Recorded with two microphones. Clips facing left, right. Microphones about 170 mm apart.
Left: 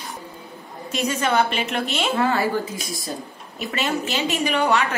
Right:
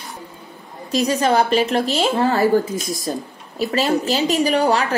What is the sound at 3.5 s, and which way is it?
A woman's voice, 35° right (ahead or behind).